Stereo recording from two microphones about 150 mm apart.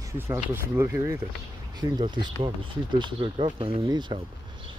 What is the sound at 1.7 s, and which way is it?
Speech, 30° right (ahead or behind).